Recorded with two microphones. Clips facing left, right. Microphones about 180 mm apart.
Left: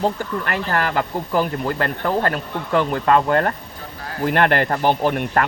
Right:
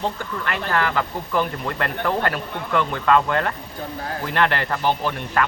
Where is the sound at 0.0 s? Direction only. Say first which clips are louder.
Left 4 dB; 40° left (ahead or behind).